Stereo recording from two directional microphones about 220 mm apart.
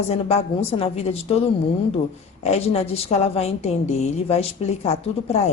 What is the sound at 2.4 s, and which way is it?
A woman's voice, 30° left (ahead or behind).